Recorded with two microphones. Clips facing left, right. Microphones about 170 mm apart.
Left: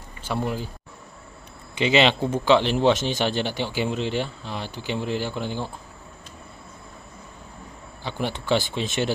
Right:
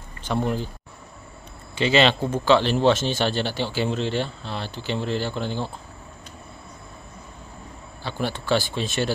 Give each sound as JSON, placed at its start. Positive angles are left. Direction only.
{"t": 0.2, "sound": "speech", "side_deg": 5}
{"t": 1.8, "sound": "a man's voice", "side_deg": 15}
{"t": 8.0, "sound": "speech", "side_deg": 20}